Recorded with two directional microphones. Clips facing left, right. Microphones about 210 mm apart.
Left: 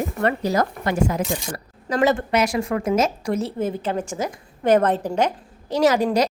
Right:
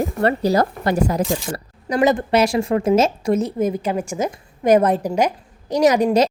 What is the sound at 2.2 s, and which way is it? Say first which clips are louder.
A woman's voice: right 4 dB; 30° right (ahead or behind).